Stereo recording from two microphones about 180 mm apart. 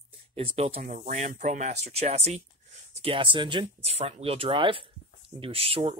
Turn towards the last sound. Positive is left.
turn(degrees=-35)  # may be behind; listen again after turning